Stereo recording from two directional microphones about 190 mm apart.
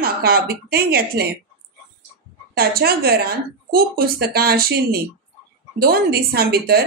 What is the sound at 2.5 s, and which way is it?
A woman's voice, 55° right (ahead or behind).